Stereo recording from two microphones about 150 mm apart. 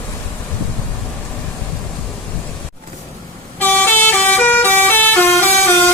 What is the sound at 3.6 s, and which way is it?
Vehicle, 10° left (ahead or behind).